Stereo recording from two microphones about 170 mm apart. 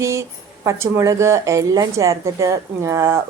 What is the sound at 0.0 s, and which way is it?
Speech, 15° right (ahead or behind).